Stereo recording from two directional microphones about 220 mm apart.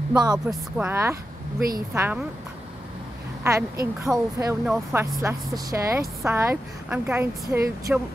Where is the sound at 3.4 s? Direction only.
15° right (ahead or behind).